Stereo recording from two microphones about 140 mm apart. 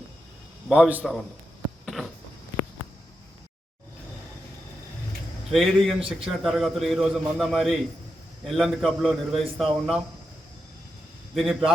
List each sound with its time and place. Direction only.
0.7 s a man's voice: 10° right (ahead or behind)
1.8 s a sound: centre (ahead or behind)
5.5 s a man's voice: centre (ahead or behind)
11.3 s a man's voice: centre (ahead or behind)